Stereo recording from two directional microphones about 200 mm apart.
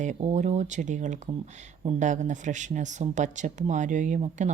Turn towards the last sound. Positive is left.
turn(degrees=-40)  # may be behind; listen again after turning